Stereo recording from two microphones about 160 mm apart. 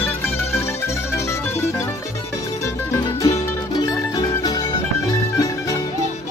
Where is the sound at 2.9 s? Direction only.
20° left (ahead or behind).